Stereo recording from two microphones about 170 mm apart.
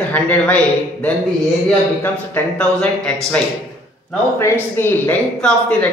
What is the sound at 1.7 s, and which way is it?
Speech, 10° left (ahead or behind).